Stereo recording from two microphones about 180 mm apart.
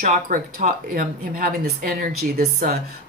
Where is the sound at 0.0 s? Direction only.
45° right (ahead or behind).